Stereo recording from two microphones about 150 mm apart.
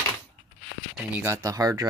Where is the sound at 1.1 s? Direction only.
15° right (ahead or behind).